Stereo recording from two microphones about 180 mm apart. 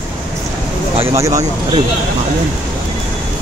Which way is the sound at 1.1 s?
15° right (ahead or behind).